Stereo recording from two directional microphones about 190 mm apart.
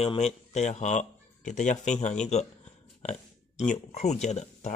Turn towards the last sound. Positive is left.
turn(degrees=35)  # may be behind; listen again after turning